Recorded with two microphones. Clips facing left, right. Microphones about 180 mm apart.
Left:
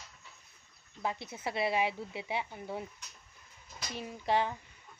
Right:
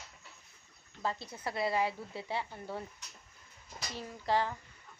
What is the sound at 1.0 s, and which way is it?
Speech, 20° left (ahead or behind).